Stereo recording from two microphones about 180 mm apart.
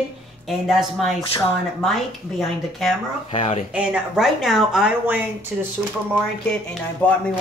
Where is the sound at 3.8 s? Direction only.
5° right (ahead or behind).